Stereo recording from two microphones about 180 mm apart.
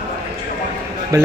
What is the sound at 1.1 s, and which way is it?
Speech, 15° right (ahead or behind).